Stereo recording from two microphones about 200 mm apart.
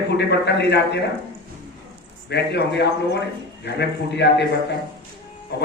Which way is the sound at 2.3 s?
55° left (ahead or behind).